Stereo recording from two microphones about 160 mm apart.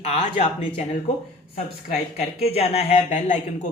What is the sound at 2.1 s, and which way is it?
Speech, 40° left (ahead or behind).